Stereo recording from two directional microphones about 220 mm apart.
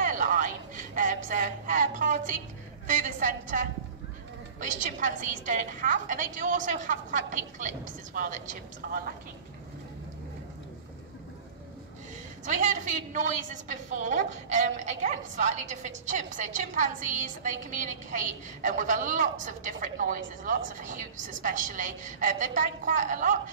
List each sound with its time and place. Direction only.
0.0 s a sound: 35° right (ahead or behind)
2.9 s a woman's voice: 35° right (ahead or behind)
12.4 s a woman's voice: 35° right (ahead or behind)